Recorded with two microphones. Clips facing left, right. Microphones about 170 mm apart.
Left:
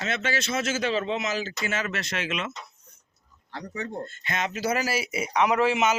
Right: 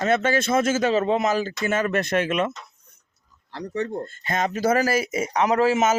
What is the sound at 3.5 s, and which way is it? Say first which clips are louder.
Speech: right 6 dB; 35° right (ahead or behind).